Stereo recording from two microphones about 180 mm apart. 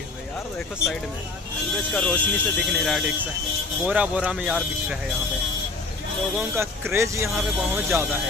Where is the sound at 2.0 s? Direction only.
10° left (ahead or behind).